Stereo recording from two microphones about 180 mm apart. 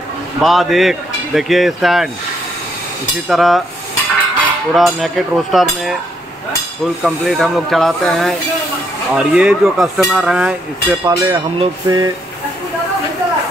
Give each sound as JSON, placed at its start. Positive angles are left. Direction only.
{"t": 0.4, "sound": "speech", "side_deg": 0}
{"t": 3.3, "sound": "speech", "side_deg": 0}
{"t": 4.7, "sound": "speech", "side_deg": 0}
{"t": 11.1, "sound": "speech", "side_deg": -25}